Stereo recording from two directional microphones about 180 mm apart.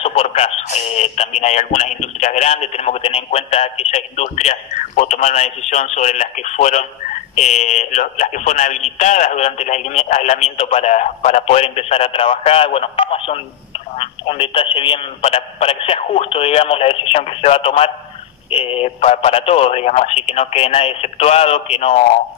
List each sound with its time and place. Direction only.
0.0 s speech: 35° left (ahead or behind)